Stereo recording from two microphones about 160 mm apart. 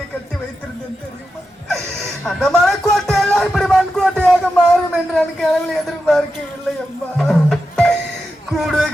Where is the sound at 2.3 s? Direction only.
5° left (ahead or behind).